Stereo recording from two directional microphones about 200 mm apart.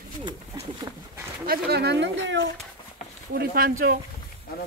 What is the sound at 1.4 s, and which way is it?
Speech, 50° right (ahead or behind).